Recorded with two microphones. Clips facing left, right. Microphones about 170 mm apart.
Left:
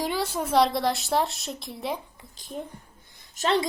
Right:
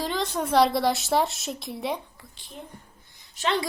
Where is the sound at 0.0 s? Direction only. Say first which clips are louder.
Even; 10° left (ahead or behind).